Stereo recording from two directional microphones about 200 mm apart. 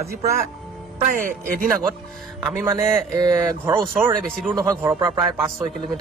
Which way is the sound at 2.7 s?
10° right (ahead or behind).